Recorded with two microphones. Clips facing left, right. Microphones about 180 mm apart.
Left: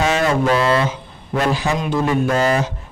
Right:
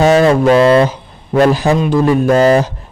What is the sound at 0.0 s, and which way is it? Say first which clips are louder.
Speech: right 8 dB; 35° right (ahead or behind).